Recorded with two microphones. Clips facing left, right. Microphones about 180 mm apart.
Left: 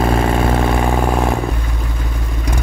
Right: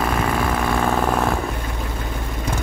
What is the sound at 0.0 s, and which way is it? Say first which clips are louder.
Vehicle: left 5 dB; 30° left (ahead or behind).